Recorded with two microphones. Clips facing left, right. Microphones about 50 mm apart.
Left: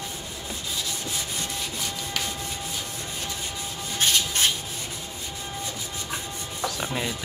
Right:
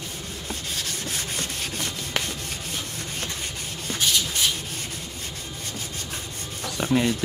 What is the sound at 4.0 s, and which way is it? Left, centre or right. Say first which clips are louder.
Rub: left 1 dB; left.